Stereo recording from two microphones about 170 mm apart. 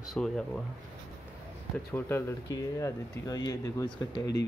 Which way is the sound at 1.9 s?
15° left (ahead or behind).